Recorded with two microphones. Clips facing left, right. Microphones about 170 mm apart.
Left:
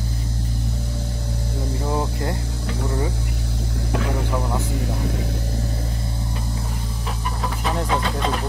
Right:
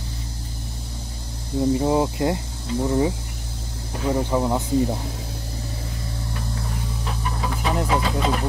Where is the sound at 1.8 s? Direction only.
20° right (ahead or behind).